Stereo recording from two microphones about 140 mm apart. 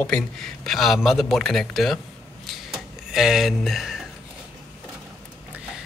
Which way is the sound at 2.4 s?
Centre (ahead or behind).